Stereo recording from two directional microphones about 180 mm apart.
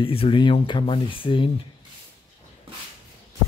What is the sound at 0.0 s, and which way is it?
Speech, 30° left (ahead or behind).